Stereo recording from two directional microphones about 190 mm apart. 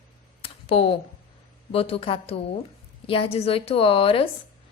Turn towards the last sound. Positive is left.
turn(degrees=30)  # may be behind; listen again after turning